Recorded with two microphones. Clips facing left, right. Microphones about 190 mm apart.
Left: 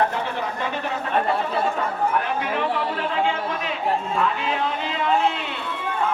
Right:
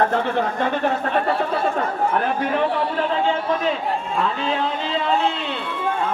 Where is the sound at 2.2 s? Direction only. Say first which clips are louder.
Right 4 dB; 40° right (ahead or behind).